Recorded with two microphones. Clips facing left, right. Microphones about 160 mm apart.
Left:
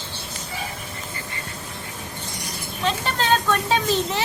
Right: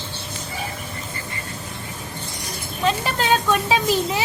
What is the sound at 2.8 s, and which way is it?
Vehicle, 5° right (ahead or behind).